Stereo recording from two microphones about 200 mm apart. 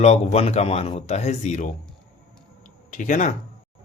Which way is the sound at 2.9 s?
40° left (ahead or behind).